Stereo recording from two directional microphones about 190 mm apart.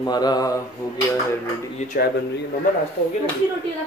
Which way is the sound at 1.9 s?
50° left (ahead or behind).